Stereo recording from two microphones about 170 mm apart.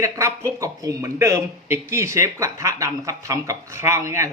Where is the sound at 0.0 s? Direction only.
15° right (ahead or behind).